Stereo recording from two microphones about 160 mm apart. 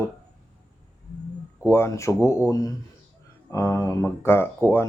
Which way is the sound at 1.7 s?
15° left (ahead or behind).